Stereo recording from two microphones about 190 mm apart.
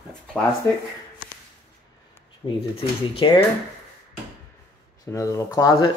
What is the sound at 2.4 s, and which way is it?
Speech, 30° left (ahead or behind).